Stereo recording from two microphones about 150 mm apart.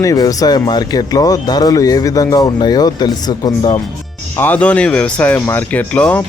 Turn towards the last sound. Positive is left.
turn(degrees=10)  # may be behind; listen again after turning